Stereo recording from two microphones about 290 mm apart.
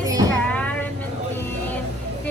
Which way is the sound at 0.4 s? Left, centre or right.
Centre.